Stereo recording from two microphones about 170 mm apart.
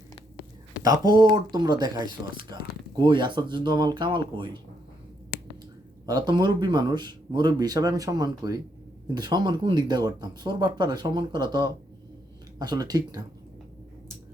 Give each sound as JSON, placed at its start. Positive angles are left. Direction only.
{"t": 0.8, "sound": "speech", "side_deg": -25}
{"t": 6.1, "sound": "speech", "side_deg": -25}